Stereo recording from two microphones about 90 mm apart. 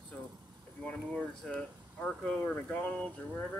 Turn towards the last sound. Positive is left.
turn(degrees=10)  # may be behind; listen again after turning